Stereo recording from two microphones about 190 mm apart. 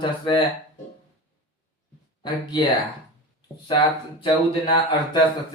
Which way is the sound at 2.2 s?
20° left (ahead or behind).